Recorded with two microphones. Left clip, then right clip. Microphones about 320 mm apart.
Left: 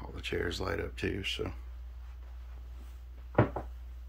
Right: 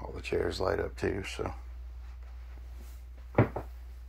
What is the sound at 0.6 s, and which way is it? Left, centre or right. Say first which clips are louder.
Speech: right 4 dB; centre.